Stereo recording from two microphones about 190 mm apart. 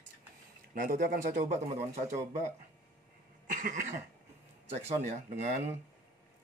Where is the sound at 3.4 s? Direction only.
45° right (ahead or behind).